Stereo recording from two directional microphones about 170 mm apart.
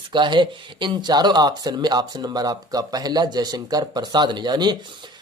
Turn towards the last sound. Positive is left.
turn(degrees=-25)  # may be behind; listen again after turning